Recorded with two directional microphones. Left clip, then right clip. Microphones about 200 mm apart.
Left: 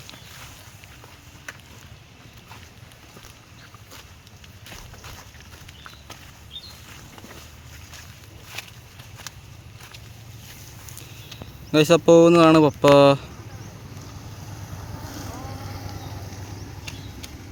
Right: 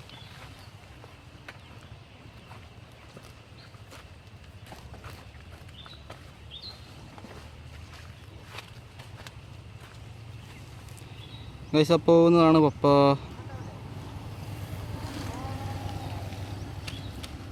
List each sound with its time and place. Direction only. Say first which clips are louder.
8.6 s a sound: left 8 dB; 60° left (ahead or behind)
11.7 s speech: left 6 dB; 5° left (ahead or behind)
14.9 s boat: left 1 dB; 15° left (ahead or behind)
16.8 s vehicle: left 3 dB; centre (ahead or behind)